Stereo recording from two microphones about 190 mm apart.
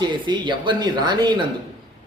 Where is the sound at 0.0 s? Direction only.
25° right (ahead or behind).